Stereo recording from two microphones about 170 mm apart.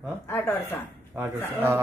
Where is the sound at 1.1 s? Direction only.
15° right (ahead or behind).